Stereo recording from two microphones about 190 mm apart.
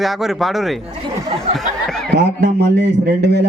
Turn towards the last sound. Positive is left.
turn(degrees=-60)  # may be behind; listen again after turning